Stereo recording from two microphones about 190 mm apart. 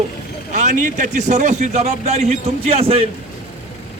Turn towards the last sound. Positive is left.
turn(degrees=-30)  # may be behind; listen again after turning